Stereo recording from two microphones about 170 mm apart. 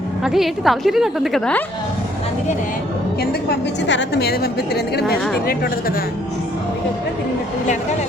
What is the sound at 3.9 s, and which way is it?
A woman's voice, 85° left.